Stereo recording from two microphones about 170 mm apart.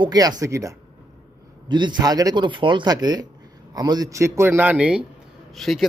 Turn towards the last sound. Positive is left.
turn(degrees=0)  # may be behind; listen again after turning